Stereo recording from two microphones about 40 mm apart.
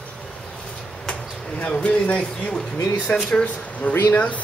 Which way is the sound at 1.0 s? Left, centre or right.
Left.